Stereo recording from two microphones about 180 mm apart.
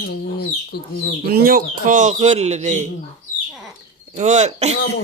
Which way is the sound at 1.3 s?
55° right (ahead or behind).